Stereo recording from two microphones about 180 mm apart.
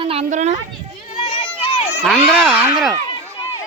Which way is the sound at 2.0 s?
5° left (ahead or behind).